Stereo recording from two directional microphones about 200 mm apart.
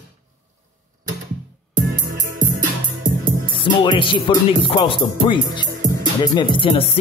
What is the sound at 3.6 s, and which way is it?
Speech, 25° left (ahead or behind).